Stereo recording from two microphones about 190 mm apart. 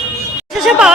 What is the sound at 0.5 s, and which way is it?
Speech, centre (ahead or behind).